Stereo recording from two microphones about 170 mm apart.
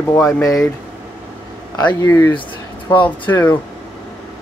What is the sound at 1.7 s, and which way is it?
A man's voice, 20° left (ahead or behind).